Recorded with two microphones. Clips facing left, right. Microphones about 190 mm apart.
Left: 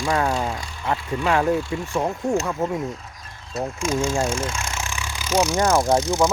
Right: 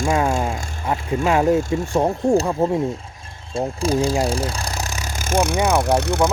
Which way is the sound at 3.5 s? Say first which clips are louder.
Right 4 dB; 30° right (ahead or behind).